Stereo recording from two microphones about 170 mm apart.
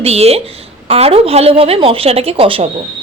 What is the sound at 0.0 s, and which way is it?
Speech, 35° right (ahead or behind).